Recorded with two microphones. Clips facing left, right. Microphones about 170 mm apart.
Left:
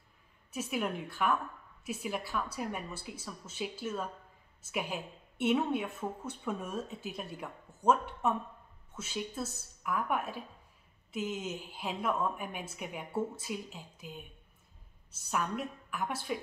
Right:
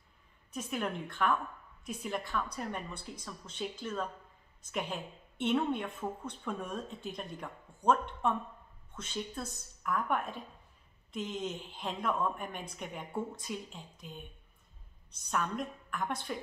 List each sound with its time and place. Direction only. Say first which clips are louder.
0.5 s a woman's voice: left 1 dB; 5° left (ahead or behind)